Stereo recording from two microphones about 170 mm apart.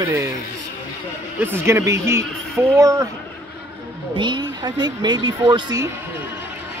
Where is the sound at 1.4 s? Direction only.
15° right (ahead or behind).